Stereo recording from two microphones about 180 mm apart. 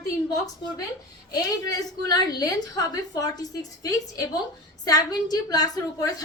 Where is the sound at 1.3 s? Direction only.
20° left (ahead or behind).